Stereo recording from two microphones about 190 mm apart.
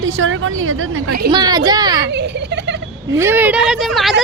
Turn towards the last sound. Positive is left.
turn(degrees=0)  # may be behind; listen again after turning